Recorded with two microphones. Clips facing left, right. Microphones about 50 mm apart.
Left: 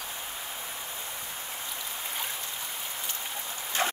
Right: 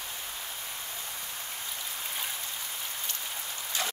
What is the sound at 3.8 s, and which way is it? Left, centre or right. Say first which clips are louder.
Dog: left 6 dB; left.